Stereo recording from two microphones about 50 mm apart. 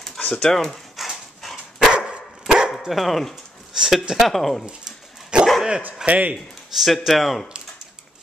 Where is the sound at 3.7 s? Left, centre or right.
Centre.